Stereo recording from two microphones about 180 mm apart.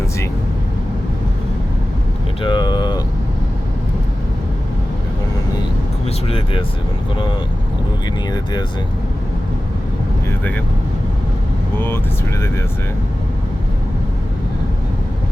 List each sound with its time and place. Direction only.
2.4 s vehicle: 25° left (ahead or behind)
6.2 s speech: 30° left (ahead or behind)